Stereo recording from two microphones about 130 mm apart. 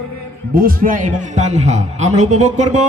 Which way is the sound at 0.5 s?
90° right.